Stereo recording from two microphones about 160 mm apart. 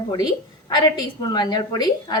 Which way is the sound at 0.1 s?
25° left (ahead or behind).